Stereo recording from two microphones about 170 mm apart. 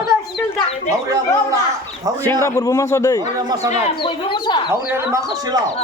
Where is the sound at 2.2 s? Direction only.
15° left (ahead or behind).